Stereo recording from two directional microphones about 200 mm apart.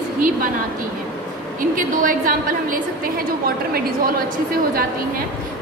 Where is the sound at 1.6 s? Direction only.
45° right (ahead or behind).